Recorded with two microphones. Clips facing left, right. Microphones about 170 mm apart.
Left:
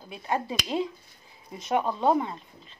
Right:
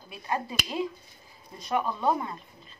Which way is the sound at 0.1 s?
20° left (ahead or behind).